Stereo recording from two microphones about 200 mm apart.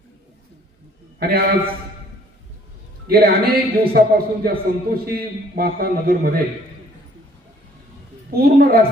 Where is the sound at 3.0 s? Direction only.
50° right (ahead or behind).